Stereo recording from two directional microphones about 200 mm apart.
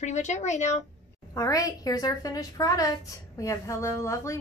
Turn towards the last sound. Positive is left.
turn(degrees=15)  # may be behind; listen again after turning